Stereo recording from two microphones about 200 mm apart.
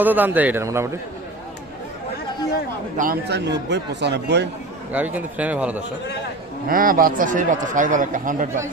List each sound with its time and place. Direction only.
0.0 s a man's voice: 10° right (ahead or behind)
3.0 s a man's voice: 50° right (ahead or behind)
4.9 s a man's voice: 10° right (ahead or behind)
6.7 s speech: 45° right (ahead or behind)